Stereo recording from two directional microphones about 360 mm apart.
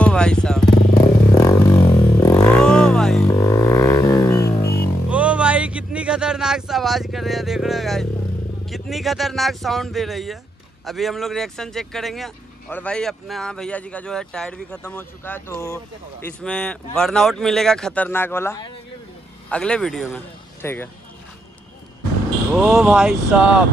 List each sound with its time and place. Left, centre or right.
0.0 s speech: centre
1.3 s a sound: centre
4.5 s music: left
5.1 s a sound: centre
8.6 s speech: centre
22.5 s speech: centre